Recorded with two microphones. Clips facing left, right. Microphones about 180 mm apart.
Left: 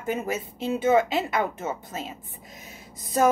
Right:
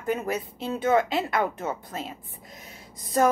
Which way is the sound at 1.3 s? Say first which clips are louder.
Even; 5° left (ahead or behind).